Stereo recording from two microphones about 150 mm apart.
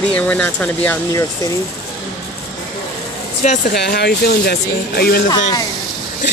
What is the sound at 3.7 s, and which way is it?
Speech, 90° left.